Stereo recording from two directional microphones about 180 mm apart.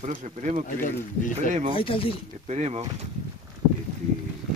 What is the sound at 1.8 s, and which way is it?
Speech, 30° left (ahead or behind).